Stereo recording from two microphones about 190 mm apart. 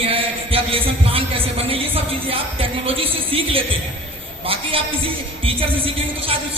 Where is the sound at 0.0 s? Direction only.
30° right (ahead or behind).